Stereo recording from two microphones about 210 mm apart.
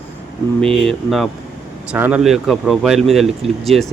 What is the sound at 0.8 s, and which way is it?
Speech, centre (ahead or behind).